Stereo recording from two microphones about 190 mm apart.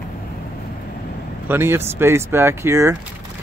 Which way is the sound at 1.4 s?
10° right (ahead or behind).